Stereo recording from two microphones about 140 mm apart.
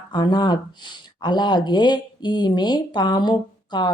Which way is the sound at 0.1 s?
30° left (ahead or behind).